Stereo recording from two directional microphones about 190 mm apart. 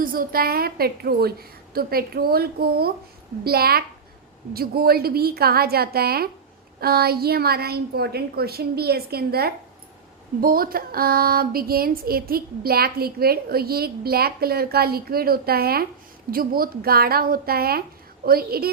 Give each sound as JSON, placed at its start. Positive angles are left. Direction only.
{"t": 0.0, "sound": "a woman's voice", "side_deg": -50}